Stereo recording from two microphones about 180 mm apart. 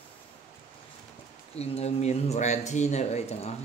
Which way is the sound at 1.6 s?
35° left (ahead or behind).